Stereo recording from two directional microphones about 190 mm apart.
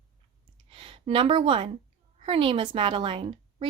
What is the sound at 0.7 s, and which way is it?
Speech, 25° right (ahead or behind).